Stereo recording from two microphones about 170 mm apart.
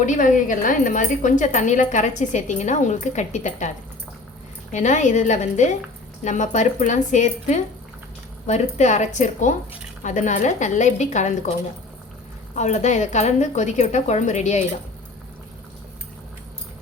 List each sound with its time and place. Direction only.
0.0 s a woman's voice: 50° left (ahead or behind)
4.7 s a woman's voice: 45° left (ahead or behind)
12.5 s a woman's voice: 40° left (ahead or behind)